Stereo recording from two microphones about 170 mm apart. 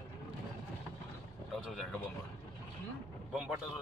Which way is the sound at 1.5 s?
5° left (ahead or behind).